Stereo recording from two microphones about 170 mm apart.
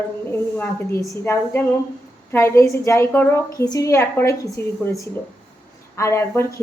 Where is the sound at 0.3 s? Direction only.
10° left (ahead or behind).